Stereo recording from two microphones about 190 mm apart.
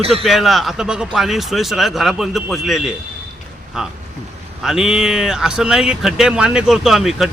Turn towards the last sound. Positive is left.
turn(degrees=0)  # may be behind; listen again after turning